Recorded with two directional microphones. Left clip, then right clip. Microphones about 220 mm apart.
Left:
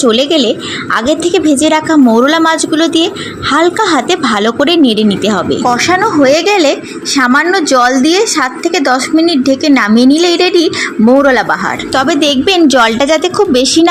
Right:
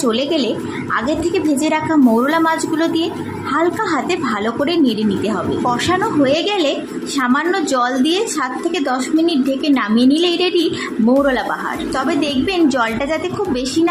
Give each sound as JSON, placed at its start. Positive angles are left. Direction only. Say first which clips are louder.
{"t": 0.0, "sound": "a woman's voice", "louder": "left 8 dB", "side_deg": 25}